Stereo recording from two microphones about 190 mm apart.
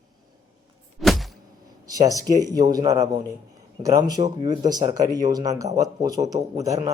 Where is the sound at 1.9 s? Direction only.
20° right (ahead or behind).